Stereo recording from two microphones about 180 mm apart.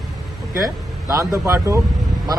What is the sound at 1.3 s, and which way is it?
Speech, 15° right (ahead or behind).